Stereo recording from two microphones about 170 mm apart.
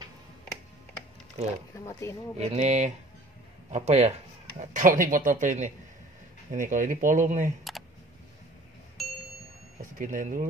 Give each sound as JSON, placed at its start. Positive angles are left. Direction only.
{"t": 1.9, "sound": "speech", "side_deg": 15}
{"t": 2.3, "sound": "speech", "side_deg": -40}
{"t": 9.0, "sound": "ding", "side_deg": 0}
{"t": 9.9, "sound": "speech", "side_deg": -50}